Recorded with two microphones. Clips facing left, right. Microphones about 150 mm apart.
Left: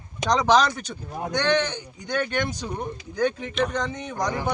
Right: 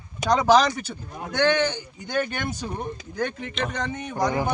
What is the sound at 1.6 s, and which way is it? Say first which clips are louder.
Speech: right 2 dB; 5° right (ahead or behind).